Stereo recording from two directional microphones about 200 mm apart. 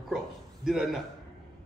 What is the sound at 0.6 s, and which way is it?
Speech, centre (ahead or behind).